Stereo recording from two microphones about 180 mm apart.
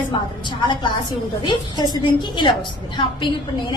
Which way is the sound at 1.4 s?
25° left (ahead or behind).